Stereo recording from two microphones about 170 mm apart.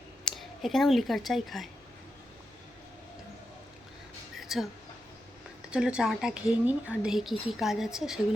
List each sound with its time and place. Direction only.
0.3 s speech: centre (ahead or behind)
4.4 s a sound: centre (ahead or behind)
5.7 s a woman's voice: 5° right (ahead or behind)